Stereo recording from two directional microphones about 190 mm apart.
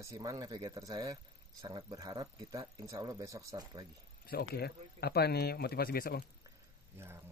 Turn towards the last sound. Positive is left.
turn(degrees=55)  # may be behind; listen again after turning